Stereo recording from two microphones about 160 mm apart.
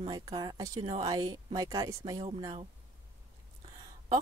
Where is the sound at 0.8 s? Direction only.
40° right (ahead or behind).